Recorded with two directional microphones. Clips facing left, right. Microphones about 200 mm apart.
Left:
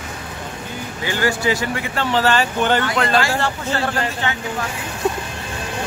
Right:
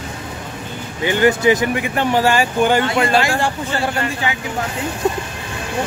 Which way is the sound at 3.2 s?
15° right (ahead or behind).